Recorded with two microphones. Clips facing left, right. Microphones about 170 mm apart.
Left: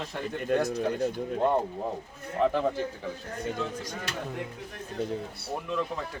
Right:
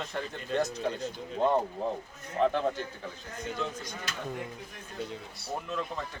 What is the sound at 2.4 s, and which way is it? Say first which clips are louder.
Speech: left 2 dB; 5° left (ahead or behind).